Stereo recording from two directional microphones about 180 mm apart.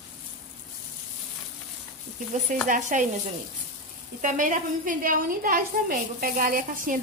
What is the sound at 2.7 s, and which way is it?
Speech, 45° right (ahead or behind).